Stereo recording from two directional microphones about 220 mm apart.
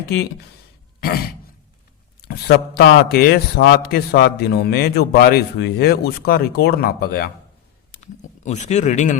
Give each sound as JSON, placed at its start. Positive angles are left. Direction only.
{"t": 1.0, "sound": "a man's voice", "side_deg": 45}
{"t": 7.9, "sound": "speech", "side_deg": 30}